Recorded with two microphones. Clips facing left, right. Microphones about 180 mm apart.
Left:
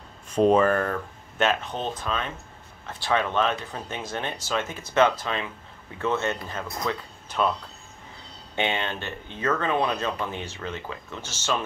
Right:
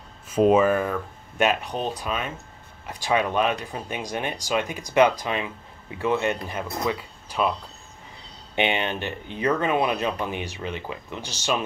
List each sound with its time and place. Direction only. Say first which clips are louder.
0.3 s speech: right 1 dB; 5° right (ahead or behind)
8.5 s speech: right 3 dB; 15° right (ahead or behind)